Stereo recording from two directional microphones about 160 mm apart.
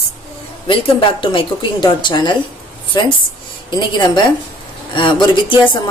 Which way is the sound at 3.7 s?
25° left (ahead or behind).